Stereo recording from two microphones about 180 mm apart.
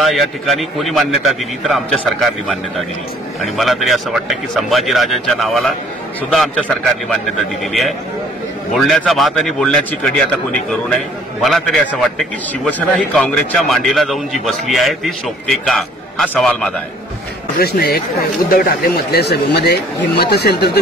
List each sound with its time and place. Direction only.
0.0 s a man's voice: centre (ahead or behind)
11.4 s a man's voice: centre (ahead or behind)
17.6 s speech: 60° left (ahead or behind)